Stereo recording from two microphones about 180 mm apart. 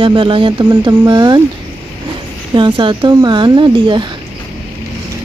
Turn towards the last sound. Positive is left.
turn(degrees=-25)  # may be behind; listen again after turning